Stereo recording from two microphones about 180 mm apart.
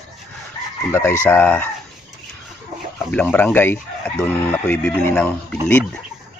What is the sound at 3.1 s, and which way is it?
Speech, 10° left (ahead or behind).